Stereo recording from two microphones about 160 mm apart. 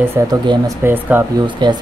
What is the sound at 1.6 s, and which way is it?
Speech, 30° right (ahead or behind).